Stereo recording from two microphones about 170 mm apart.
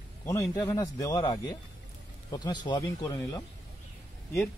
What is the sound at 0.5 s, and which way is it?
Speech, 20° left (ahead or behind).